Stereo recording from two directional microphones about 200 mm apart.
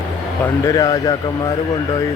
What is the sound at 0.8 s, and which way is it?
Speech, 20° left (ahead or behind).